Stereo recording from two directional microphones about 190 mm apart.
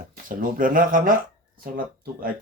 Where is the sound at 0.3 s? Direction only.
45° right (ahead or behind).